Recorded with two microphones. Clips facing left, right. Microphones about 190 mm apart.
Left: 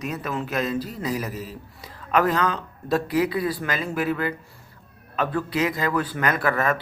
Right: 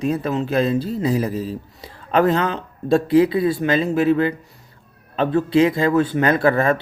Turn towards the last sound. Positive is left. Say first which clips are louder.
# right 6 dB
turn(degrees=-30)  # may be behind; listen again after turning